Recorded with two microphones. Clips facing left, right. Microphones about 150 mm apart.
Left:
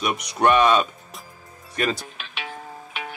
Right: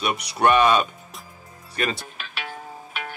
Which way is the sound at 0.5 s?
Centre (ahead or behind).